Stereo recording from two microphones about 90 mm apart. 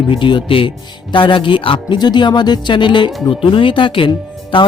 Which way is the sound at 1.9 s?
55° left (ahead or behind).